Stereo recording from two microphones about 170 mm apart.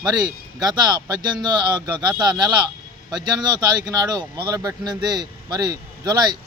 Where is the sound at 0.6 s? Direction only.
25° right (ahead or behind).